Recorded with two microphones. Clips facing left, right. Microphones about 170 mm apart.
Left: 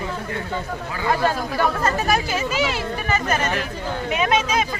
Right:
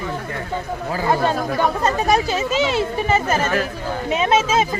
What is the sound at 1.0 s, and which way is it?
Speech, 20° right (ahead or behind).